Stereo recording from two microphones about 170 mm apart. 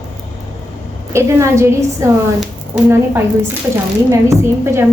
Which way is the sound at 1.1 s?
15° right (ahead or behind).